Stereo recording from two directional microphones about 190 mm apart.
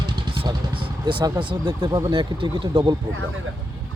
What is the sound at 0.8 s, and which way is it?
Speech, 25° right (ahead or behind).